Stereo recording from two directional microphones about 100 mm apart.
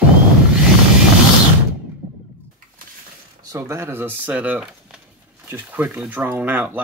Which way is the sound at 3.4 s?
35° right (ahead or behind).